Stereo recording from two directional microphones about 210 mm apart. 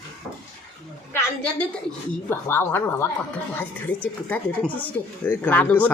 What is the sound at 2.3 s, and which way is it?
A woman's voice, 10° left (ahead or behind).